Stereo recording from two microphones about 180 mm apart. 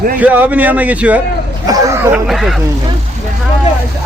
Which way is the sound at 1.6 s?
20° right (ahead or behind).